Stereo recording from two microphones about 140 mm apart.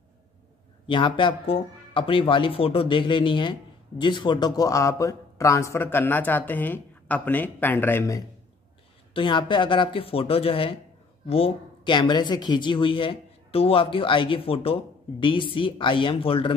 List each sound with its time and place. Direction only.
0.8 s a woman's voice: 35° left (ahead or behind); by 8.2 s 20° left (ahead or behind)
9.1 s a woman's voice: 35° left (ahead or behind)